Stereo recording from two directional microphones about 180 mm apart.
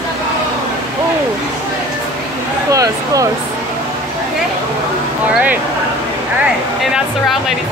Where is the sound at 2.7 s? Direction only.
20° right (ahead or behind).